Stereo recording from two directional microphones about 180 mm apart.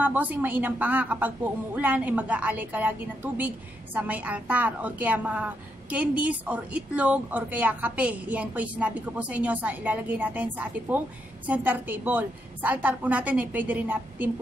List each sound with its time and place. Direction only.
0.0 s a woman's voice: 10° right (ahead or behind)